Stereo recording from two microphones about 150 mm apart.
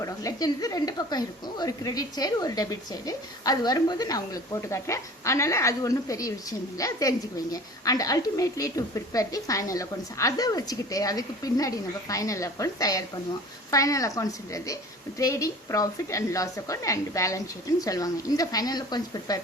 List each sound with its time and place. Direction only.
0.0 s speech: 20° left (ahead or behind)